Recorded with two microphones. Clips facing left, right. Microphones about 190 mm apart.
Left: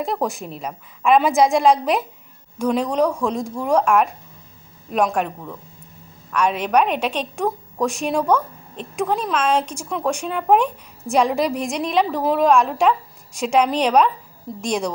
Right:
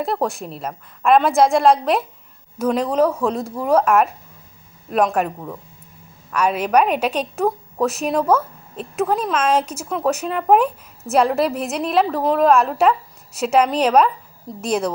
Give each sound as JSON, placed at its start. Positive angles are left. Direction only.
{"t": 0.0, "sound": "a woman's voice", "side_deg": 0}